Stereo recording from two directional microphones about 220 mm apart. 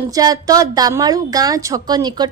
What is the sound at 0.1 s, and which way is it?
A woman's voice, 15° right (ahead or behind).